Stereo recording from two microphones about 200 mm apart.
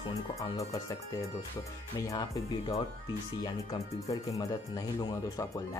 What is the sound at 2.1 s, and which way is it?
Speech, 20° left (ahead or behind).